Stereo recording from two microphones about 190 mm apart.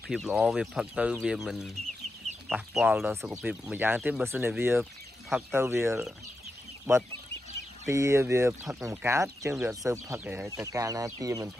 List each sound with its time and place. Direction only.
0.1 s speech: centre (ahead or behind); by 11.4 s 20° right (ahead or behind)